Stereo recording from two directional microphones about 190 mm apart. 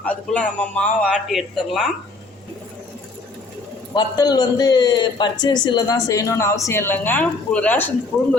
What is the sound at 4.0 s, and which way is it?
A man's voice, 20° left (ahead or behind).